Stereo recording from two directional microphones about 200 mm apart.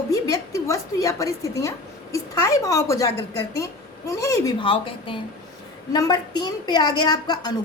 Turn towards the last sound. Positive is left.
turn(degrees=20)  # may be behind; listen again after turning